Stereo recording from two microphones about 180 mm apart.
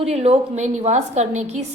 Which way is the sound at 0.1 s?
35° right (ahead or behind).